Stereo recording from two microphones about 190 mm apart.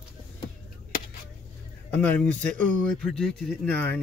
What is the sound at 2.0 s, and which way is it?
Speech, 10° left (ahead or behind).